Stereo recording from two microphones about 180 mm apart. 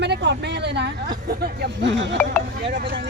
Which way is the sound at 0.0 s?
75° right (ahead or behind).